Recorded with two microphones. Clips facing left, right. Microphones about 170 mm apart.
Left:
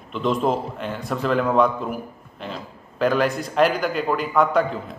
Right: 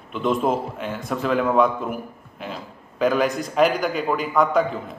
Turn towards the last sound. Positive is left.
turn(degrees=0)  # may be behind; listen again after turning